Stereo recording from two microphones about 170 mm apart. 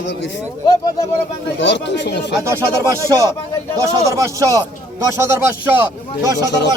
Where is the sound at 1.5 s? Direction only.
90° left.